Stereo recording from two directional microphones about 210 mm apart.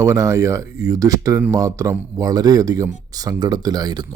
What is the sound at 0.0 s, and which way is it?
Speech, 15° right (ahead or behind).